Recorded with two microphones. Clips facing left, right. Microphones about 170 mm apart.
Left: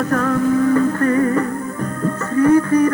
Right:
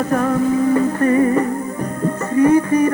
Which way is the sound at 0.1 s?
20° right (ahead or behind).